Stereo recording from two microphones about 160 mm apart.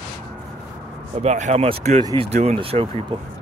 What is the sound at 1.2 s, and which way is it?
Speech, 45° right (ahead or behind).